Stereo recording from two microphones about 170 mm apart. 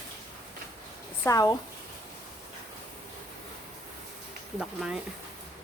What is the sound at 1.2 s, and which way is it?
Speech, 20° left (ahead or behind).